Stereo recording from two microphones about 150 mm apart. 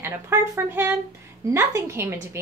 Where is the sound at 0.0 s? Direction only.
15° right (ahead or behind).